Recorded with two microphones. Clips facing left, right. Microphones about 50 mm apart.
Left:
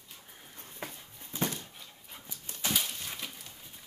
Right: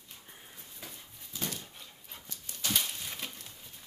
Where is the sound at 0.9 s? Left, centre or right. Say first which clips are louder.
Left 3 dB; left.